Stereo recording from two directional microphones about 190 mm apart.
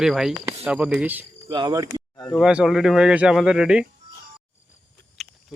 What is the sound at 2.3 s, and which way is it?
Speech, 5° right (ahead or behind).